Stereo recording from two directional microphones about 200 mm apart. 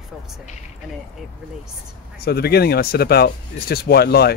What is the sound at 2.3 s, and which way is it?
Speech, 50° left (ahead or behind).